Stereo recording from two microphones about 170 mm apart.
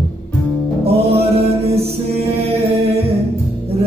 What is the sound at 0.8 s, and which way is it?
Music, 35° right (ahead or behind).